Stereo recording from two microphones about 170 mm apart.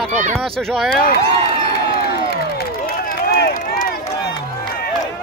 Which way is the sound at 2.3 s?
65° left (ahead or behind).